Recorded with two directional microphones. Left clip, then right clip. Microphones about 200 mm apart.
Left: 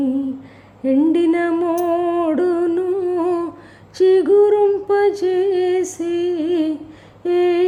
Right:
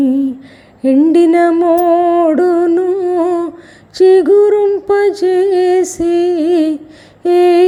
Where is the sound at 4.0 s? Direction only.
10° right (ahead or behind).